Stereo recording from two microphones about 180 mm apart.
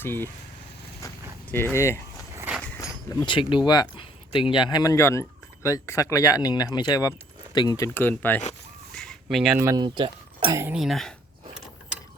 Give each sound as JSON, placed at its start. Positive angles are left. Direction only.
{"t": 0.0, "sound": "speech", "side_deg": 10}
{"t": 1.0, "sound": "a sound", "side_deg": 10}
{"t": 2.3, "sound": "a sound", "side_deg": -10}
{"t": 2.6, "sound": "speech", "side_deg": 15}
{"t": 7.9, "sound": "speech", "side_deg": 10}
{"t": 9.0, "sound": "chicken", "side_deg": 0}
{"t": 9.6, "sound": "speech", "side_deg": -20}
{"t": 10.6, "sound": "speech", "side_deg": -5}